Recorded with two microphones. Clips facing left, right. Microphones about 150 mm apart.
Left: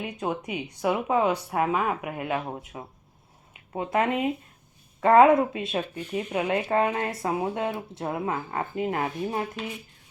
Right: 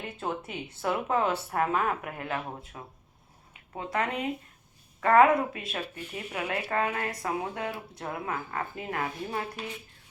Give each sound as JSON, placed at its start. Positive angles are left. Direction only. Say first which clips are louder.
{"t": 0.0, "sound": "a woman's voice", "louder": "left 4 dB", "side_deg": 15}